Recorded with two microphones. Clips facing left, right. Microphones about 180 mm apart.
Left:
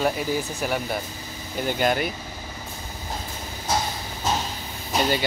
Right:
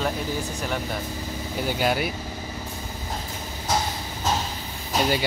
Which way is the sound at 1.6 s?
5° right (ahead or behind).